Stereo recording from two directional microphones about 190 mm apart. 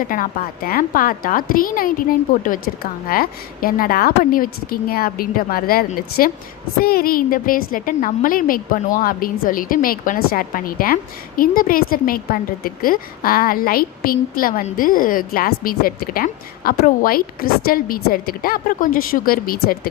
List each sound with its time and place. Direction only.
0.1 s a woman's voice: 45° left (ahead or behind)